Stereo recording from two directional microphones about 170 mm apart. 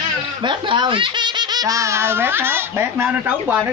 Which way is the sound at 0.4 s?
25° right (ahead or behind).